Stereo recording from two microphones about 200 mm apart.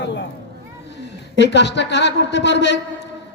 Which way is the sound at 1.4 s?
60° left (ahead or behind).